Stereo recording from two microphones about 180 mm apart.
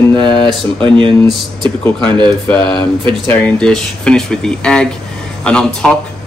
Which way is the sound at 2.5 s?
5° left (ahead or behind).